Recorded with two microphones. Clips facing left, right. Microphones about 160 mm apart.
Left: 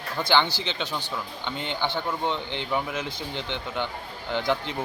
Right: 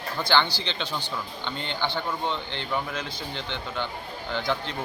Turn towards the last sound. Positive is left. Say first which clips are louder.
# left 2 dB
turn(degrees=15)  # may be behind; listen again after turning